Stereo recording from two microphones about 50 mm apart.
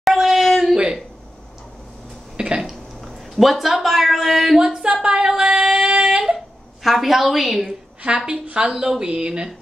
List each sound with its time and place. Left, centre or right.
0.0 s a sound: centre
2.3 s a sound: centre
3.3 s speech: centre
5.0 s female singing: centre
8.0 s a woman's voice: right
8.5 s speech: centre